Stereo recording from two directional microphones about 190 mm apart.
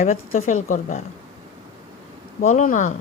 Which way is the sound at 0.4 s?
40° left (ahead or behind).